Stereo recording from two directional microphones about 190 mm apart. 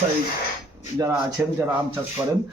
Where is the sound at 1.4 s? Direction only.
10° right (ahead or behind).